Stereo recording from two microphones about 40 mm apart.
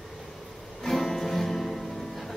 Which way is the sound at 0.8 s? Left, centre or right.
Centre.